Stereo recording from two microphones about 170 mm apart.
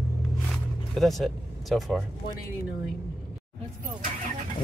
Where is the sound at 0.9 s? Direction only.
Centre (ahead or behind).